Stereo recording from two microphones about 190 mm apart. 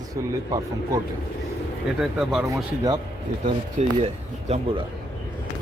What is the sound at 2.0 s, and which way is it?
Speech, centre (ahead or behind).